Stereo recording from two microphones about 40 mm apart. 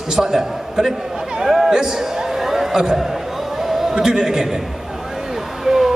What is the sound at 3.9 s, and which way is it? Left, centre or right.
Speech, centre.